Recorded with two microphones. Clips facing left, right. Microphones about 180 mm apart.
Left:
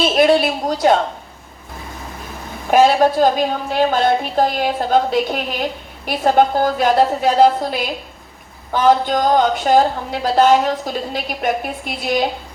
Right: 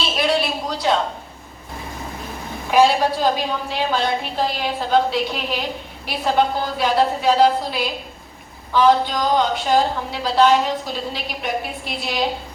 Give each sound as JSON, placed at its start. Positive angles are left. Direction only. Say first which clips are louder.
{"t": 0.0, "sound": "a woman's voice", "louder": "left 7 dB", "side_deg": 50}
{"t": 2.6, "sound": "a woman's voice", "louder": "left 3 dB", "side_deg": 50}